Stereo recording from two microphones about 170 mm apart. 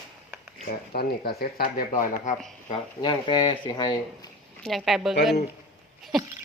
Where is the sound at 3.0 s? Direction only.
25° left (ahead or behind).